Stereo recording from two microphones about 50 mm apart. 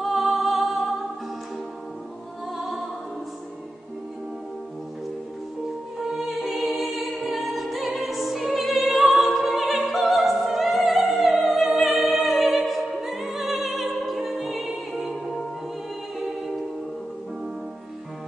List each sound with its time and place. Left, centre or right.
0.0 s music: centre
5.9 s music: centre